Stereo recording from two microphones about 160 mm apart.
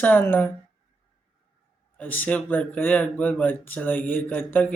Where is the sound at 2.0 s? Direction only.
10° left (ahead or behind).